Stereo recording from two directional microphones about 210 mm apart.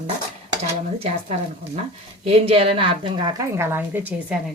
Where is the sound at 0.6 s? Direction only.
30° right (ahead or behind).